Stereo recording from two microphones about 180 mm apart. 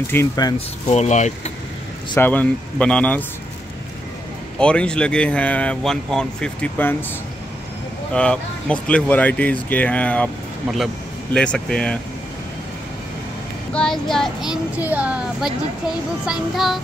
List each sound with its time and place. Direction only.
0.1 s speech: 20° left (ahead or behind)
0.8 s speech: 40° left (ahead or behind)
2.1 s speech: 10° left (ahead or behind)
4.6 s speech: 5° left (ahead or behind)
8.1 s speech: 5° left (ahead or behind)
11.3 s speech: 5° left (ahead or behind)
13.7 s speech: centre (ahead or behind)